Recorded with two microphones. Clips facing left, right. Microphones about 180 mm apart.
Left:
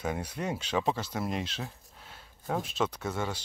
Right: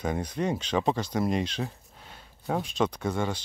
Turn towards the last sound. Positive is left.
turn(degrees=5)  # may be behind; listen again after turning